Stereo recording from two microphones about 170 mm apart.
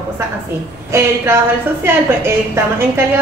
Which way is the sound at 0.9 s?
15° right (ahead or behind).